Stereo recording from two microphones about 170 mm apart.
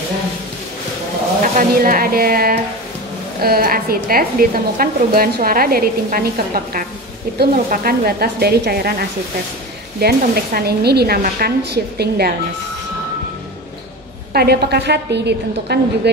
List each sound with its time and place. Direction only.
1.4 s a woman's voice: 55° right (ahead or behind)
9.9 s speech: 65° right (ahead or behind)
14.3 s speech: 70° right (ahead or behind)